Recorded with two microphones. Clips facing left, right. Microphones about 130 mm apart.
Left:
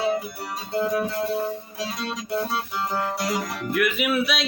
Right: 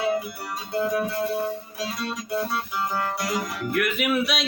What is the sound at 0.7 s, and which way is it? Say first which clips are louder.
Music: left 1 dB; 25° left (ahead or behind).